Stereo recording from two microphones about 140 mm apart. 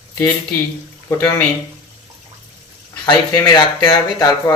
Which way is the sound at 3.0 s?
30° left (ahead or behind).